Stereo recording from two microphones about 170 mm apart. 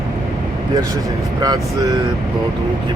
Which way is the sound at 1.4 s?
25° right (ahead or behind).